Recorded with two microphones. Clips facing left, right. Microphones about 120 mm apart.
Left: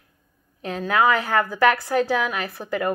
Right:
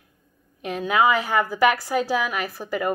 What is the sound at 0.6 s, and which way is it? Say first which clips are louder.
A woman's voice: even; 15° right (ahead or behind).